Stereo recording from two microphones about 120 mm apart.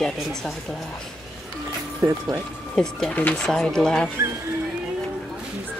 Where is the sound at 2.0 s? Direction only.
30° right (ahead or behind).